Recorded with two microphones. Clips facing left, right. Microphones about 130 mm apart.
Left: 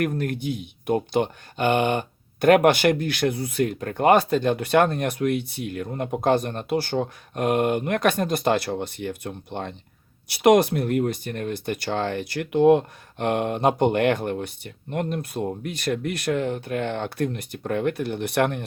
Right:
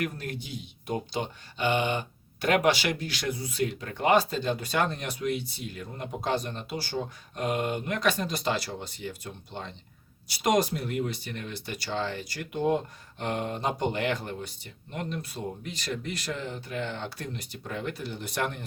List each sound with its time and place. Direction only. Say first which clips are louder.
0.0 s speech: left 8 dB; 55° left (ahead or behind)